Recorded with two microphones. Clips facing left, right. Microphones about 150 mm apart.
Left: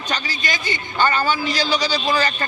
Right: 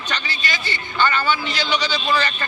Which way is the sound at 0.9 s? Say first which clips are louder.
Left 1 dB; 40° left (ahead or behind).